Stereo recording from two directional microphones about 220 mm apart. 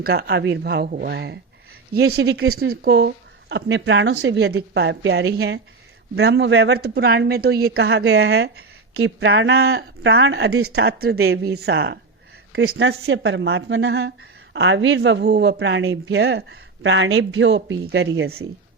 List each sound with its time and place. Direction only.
0.0 s speech: 45° right (ahead or behind)
2.3 s speech: 75° right (ahead or behind)
2.6 s a man's voice: 45° right (ahead or behind)